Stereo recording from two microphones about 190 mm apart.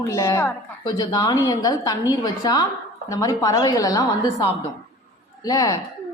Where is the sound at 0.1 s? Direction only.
15° left (ahead or behind).